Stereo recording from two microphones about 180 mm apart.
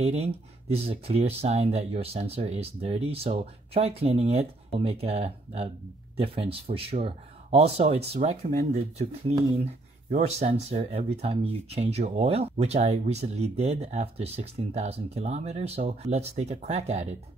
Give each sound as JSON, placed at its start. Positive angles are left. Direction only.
{"t": 0.0, "sound": "speech", "side_deg": -35}